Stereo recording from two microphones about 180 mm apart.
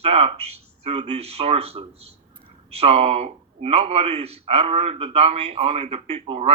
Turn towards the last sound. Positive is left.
turn(degrees=-35)  # may be behind; listen again after turning